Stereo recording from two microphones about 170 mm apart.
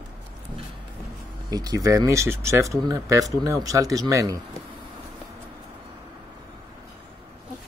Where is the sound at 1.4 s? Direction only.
20° right (ahead or behind).